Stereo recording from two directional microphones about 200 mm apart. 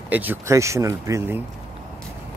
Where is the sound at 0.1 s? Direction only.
10° right (ahead or behind).